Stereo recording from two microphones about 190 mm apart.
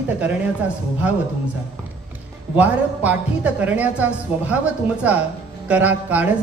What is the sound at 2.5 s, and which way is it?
A woman's voice, 10° right (ahead or behind).